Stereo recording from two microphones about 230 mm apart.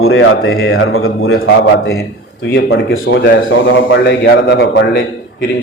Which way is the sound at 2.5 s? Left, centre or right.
Left.